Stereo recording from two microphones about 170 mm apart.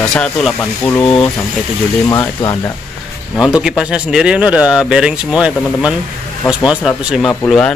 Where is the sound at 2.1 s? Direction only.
20° left (ahead or behind).